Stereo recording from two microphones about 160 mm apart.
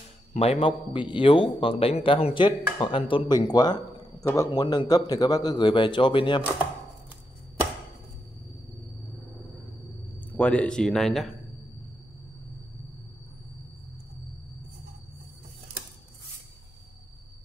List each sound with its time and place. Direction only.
0.3 s a man's voice: 40° left (ahead or behind)
10.3 s speech: 5° left (ahead or behind)